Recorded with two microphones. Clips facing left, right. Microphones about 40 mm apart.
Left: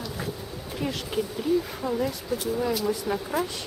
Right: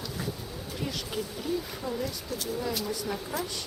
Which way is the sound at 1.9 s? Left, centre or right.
Left.